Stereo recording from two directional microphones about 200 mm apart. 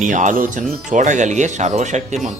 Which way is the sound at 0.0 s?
40° right (ahead or behind).